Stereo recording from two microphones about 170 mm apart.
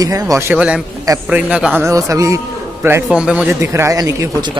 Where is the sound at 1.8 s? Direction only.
20° right (ahead or behind).